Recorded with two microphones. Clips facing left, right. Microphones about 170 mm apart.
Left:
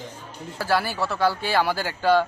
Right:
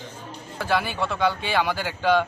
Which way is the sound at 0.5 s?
5° left (ahead or behind).